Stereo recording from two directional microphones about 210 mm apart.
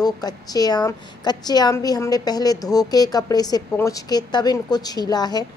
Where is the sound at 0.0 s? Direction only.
20° left (ahead or behind).